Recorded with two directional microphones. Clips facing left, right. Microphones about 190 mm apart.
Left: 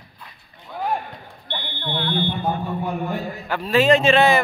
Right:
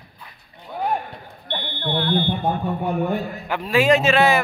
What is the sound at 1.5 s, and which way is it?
Speech, 45° right (ahead or behind).